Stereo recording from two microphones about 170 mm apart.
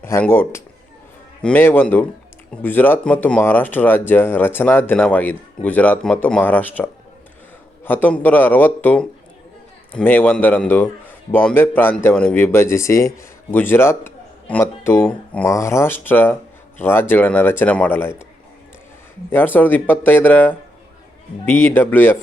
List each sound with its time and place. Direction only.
0.0 s speech: 15° left (ahead or behind)
19.3 s speech: 10° left (ahead or behind)